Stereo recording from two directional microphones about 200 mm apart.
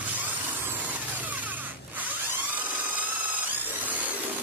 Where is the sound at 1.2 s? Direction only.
10° right (ahead or behind).